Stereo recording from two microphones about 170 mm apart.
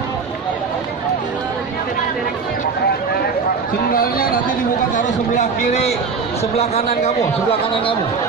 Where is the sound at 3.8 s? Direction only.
60° left (ahead or behind).